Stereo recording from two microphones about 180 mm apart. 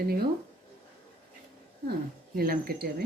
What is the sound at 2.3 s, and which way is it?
Speech, 55° right (ahead or behind).